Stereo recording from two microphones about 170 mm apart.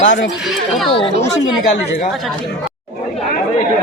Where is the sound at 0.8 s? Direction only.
30° left (ahead or behind).